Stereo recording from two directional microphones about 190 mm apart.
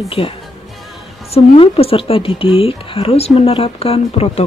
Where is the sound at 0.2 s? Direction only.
30° left (ahead or behind).